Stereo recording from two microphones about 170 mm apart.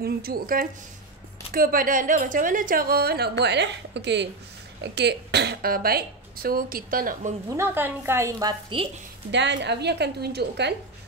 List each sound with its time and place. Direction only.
0.0 s a woman's voice: 60° right (ahead or behind)
7.4 s a woman's voice: 15° right (ahead or behind)
9.3 s a woman's voice: 90° right